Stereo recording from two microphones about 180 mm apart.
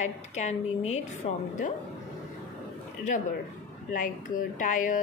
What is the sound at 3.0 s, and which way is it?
Speech, 45° left (ahead or behind).